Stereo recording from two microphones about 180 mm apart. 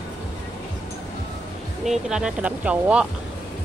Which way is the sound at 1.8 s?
5° right (ahead or behind).